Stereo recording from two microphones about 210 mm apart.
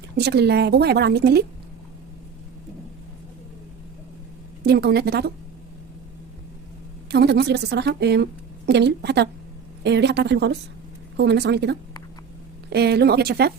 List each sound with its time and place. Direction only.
0.2 s a woman's voice: 50° right (ahead or behind)
4.6 s a woman's voice: 50° right (ahead or behind)
7.1 s a woman's voice: 50° right (ahead or behind)